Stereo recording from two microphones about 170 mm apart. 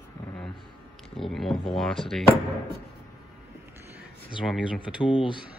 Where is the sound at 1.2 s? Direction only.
Centre (ahead or behind).